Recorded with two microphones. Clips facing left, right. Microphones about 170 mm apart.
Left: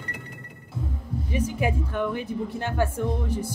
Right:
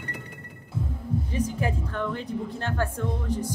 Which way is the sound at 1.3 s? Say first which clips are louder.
Left 4 dB; 10° left (ahead or behind).